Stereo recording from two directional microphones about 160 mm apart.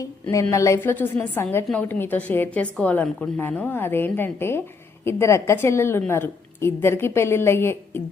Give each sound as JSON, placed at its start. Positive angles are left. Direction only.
{"t": 0.0, "sound": "a woman's voice", "side_deg": 20}